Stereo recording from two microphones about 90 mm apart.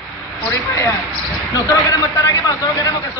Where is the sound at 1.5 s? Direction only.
45° left (ahead or behind).